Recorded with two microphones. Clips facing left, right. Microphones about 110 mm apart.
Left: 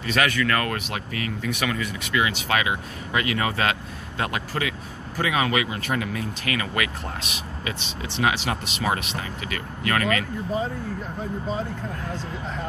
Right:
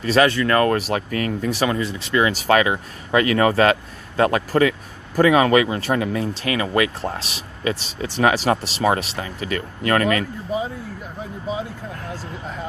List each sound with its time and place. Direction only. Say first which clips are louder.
0.0 s speech: right 6 dB; 30° right (ahead or behind)